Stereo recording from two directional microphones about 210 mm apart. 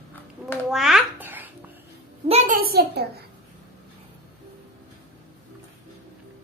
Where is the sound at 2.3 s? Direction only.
35° right (ahead or behind).